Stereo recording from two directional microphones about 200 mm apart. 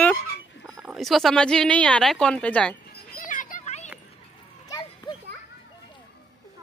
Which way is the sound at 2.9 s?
50° left (ahead or behind).